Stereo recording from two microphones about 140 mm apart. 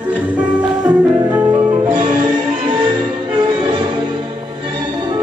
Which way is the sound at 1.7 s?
35° right (ahead or behind).